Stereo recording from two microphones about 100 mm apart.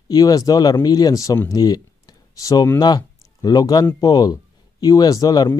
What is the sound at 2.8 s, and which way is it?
Speech, 40° left (ahead or behind).